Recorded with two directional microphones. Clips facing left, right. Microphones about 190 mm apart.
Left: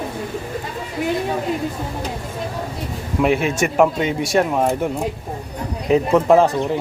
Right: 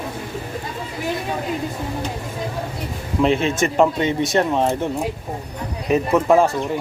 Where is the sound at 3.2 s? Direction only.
10° left (ahead or behind).